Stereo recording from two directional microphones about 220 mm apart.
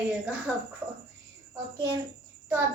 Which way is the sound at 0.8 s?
10° right (ahead or behind).